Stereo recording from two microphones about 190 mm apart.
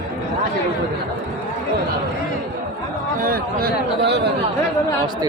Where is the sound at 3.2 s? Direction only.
50° right (ahead or behind).